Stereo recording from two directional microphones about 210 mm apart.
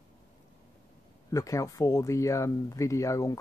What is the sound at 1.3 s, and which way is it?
Speech, 15° left (ahead or behind).